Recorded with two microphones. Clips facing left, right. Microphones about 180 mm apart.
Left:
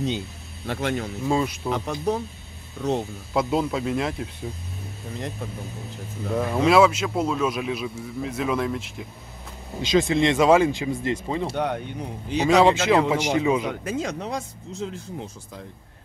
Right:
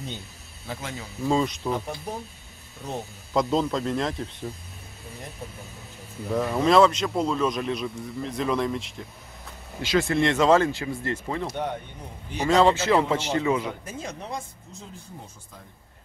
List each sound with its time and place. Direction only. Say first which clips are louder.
0.7 s speech: left 9 dB; 70° left (ahead or behind)
1.2 s speech: right 2 dB; 5° left (ahead or behind)
1.7 s speech: left 5 dB; 90° left
3.3 s speech: even; 5° left (ahead or behind)
6.3 s speech: left 1 dB; 5° left (ahead or behind)
9.8 s speech: left 3 dB; 20° left (ahead or behind)
11.5 s speech: left 4 dB; 85° left
13.1 s speech: left 3 dB; 15° left (ahead or behind)
13.8 s speech: left 7 dB; 90° left